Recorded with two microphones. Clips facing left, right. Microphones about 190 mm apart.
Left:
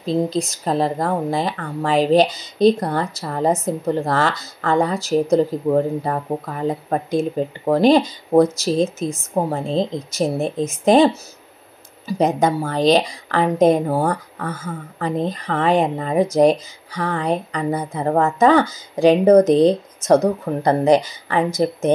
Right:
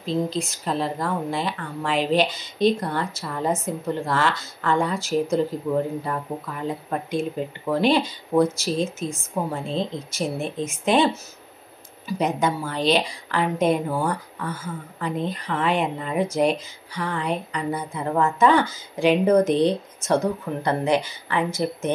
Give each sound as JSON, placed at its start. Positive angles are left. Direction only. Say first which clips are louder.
{"t": 0.0, "sound": "speech", "louder": "left 5 dB", "side_deg": 40}
{"t": 12.1, "sound": "speech", "louder": "left 5 dB", "side_deg": 40}